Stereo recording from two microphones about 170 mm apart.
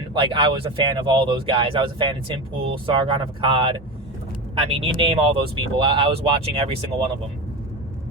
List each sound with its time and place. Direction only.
0.1 s speech: 30° right (ahead or behind)